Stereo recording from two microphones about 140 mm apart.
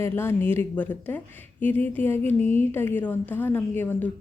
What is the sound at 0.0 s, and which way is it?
A woman's voice, 15° left (ahead or behind).